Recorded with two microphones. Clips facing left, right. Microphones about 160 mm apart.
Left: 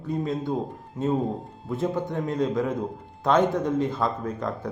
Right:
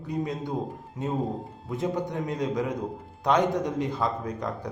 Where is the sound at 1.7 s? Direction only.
15° right (ahead or behind).